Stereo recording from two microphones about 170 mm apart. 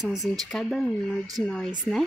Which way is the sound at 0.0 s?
Centre (ahead or behind).